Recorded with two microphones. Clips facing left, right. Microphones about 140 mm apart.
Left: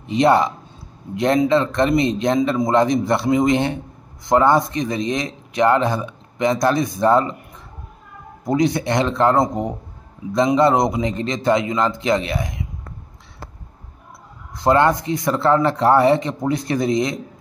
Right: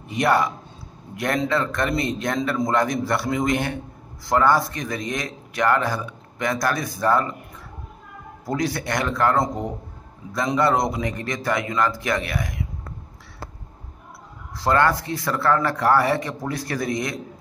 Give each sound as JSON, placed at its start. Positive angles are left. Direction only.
{"t": 0.0, "sound": "a man's voice", "side_deg": 25}
{"t": 8.5, "sound": "speech", "side_deg": 20}
{"t": 14.6, "sound": "speech", "side_deg": 20}